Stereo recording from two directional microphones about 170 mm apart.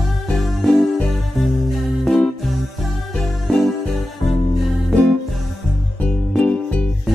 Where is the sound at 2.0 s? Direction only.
Centre (ahead or behind).